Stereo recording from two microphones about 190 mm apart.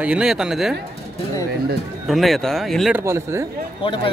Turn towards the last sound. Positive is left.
turn(degrees=25)  # may be behind; listen again after turning